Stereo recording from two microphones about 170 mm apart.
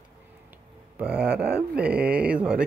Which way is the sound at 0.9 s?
10° right (ahead or behind).